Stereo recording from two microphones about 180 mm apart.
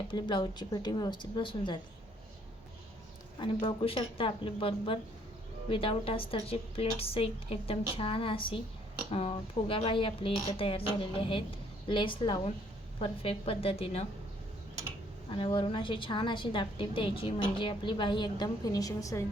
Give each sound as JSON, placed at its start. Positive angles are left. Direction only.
{"t": 0.1, "sound": "a woman's voice", "side_deg": 25}
{"t": 3.3, "sound": "a woman's voice", "side_deg": 25}
{"t": 15.3, "sound": "a woman's voice", "side_deg": 30}